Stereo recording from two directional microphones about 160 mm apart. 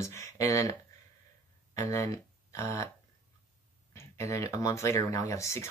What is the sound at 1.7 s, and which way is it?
Speech, 20° left (ahead or behind).